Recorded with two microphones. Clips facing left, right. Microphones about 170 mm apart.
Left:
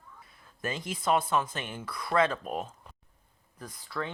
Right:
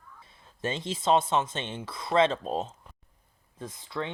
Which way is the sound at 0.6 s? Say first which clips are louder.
Right 3 dB; 25° right (ahead or behind).